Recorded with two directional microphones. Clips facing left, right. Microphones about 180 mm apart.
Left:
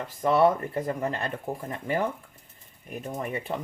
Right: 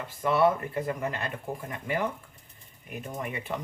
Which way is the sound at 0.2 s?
35° left (ahead or behind).